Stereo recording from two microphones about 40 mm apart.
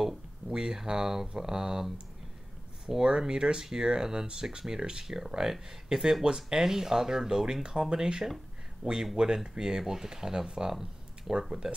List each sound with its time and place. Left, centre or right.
0.0 s a sound: centre
0.6 s speech: centre
2.9 s speech: centre